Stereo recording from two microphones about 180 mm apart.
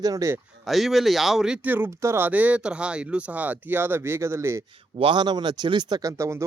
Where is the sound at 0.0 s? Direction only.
20° right (ahead or behind).